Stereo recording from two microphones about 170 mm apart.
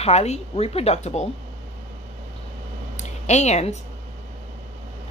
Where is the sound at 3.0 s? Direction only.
40° left (ahead or behind).